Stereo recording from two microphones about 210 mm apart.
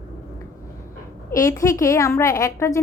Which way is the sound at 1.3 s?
15° left (ahead or behind).